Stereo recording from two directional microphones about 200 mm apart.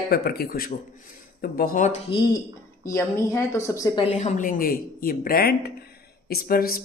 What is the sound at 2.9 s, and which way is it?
A woman's voice, 15° left (ahead or behind).